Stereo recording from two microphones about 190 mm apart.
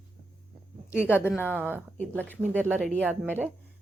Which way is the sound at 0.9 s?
10° left (ahead or behind).